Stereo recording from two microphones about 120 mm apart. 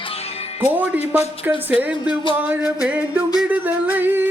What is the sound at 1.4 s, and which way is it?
Yodeling, 15° right (ahead or behind).